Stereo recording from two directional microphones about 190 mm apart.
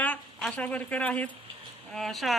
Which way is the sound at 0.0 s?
5° left (ahead or behind).